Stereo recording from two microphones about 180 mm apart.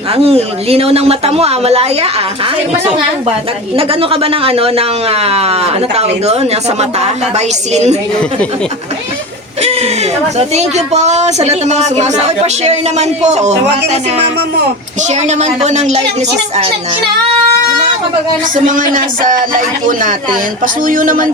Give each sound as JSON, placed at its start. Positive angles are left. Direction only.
{"t": 0.1, "sound": "speech", "side_deg": -35}
{"t": 3.8, "sound": "speech", "side_deg": -30}
{"t": 10.3, "sound": "speech", "side_deg": -35}
{"t": 15.1, "sound": "speech", "side_deg": -40}
{"t": 18.5, "sound": "a sound", "side_deg": -45}